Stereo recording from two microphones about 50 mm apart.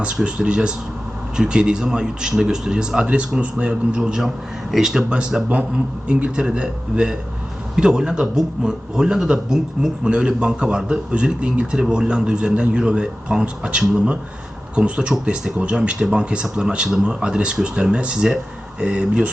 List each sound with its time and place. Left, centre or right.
0.2 s a man's voice: centre
5.0 s a man's voice: centre